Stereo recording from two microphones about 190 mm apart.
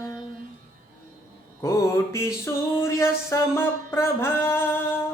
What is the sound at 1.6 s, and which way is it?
Mantra, 15° left (ahead or behind).